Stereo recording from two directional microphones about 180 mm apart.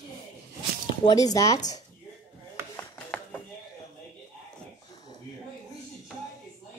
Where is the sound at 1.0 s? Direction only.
20° left (ahead or behind).